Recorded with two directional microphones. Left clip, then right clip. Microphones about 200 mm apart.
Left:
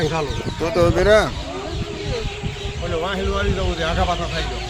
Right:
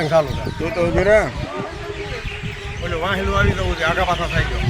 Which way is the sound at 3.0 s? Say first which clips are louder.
Right 5 dB; 20° right (ahead or behind).